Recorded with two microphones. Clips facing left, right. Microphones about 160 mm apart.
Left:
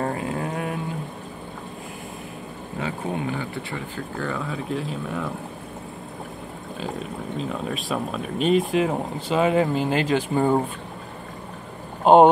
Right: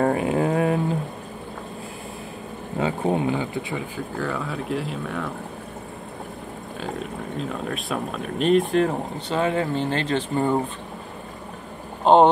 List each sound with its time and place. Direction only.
0.0 s a sound: 15° right (ahead or behind)
2.8 s speech: 25° right (ahead or behind)
3.3 s speech: 15° right (ahead or behind)
4.2 s speech: centre (ahead or behind)
6.8 s speech: centre (ahead or behind)
12.0 s speech: 10° left (ahead or behind)